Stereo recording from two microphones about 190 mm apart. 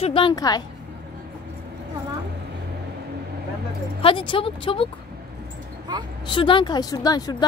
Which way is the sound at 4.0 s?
25° left (ahead or behind).